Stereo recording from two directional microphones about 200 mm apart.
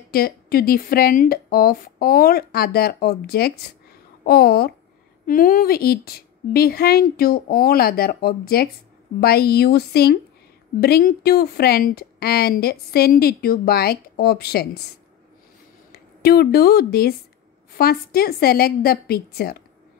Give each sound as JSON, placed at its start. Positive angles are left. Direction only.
{"t": 0.1, "sound": "a woman's voice", "side_deg": 50}
{"t": 15.9, "sound": "a woman's voice", "side_deg": 50}